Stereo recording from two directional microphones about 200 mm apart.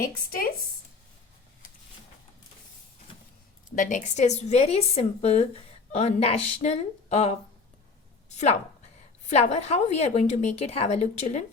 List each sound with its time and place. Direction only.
0.0 s speech: 45° left (ahead or behind)
3.1 s vehicle: 25° left (ahead or behind)
3.8 s a woman's voice: 40° left (ahead or behind)
9.3 s a woman's voice: 30° left (ahead or behind)